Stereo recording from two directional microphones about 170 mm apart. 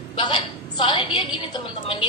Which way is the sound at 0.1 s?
30° left (ahead or behind).